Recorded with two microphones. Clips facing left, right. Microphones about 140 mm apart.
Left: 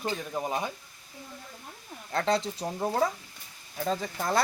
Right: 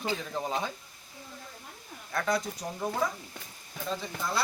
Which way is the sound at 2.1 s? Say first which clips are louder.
Left 3 dB; 25° left (ahead or behind).